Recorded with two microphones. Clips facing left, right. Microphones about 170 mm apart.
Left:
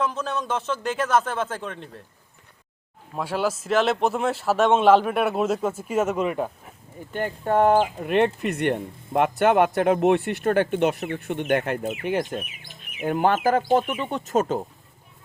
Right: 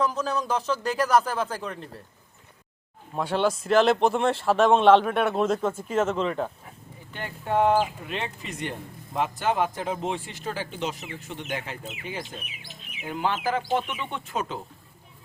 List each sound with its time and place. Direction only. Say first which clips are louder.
0.0 s speech: even; centre (ahead or behind)
3.2 s speech: right 1 dB; 5° left (ahead or behind)
7.1 s speech: left 5 dB; 45° left (ahead or behind)